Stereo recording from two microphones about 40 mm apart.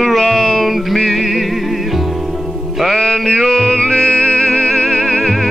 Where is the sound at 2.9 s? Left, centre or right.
Centre.